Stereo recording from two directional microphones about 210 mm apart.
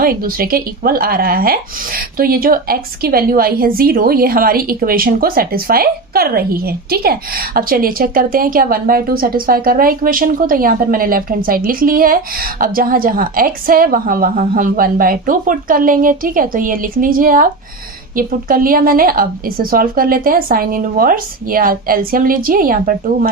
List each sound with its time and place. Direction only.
0.0 s speech: 45° right (ahead or behind)